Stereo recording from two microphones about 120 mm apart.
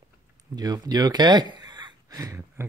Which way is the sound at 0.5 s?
35° right (ahead or behind).